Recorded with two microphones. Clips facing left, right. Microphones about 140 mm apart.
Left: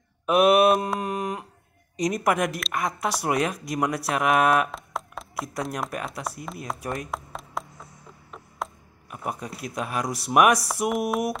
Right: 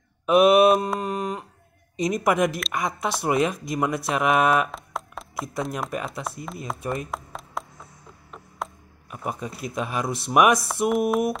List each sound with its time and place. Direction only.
0.3 s speech: 5° left (ahead or behind)
8.6 s a sound: centre (ahead or behind)
9.1 s speech: 5° left (ahead or behind)